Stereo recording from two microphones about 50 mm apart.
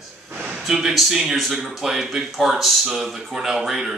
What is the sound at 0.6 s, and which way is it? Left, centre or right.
A man's voice, centre.